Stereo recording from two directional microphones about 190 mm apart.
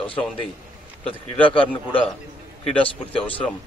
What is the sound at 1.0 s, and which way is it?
Speech, 30° left (ahead or behind).